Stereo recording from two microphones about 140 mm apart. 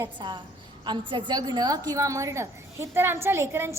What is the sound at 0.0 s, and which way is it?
A woman's voice, 35° right (ahead or behind).